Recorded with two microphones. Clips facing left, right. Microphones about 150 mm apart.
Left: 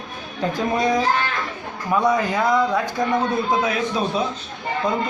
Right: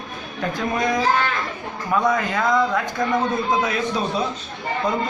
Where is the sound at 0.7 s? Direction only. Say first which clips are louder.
Left 2 dB; 35° left (ahead or behind).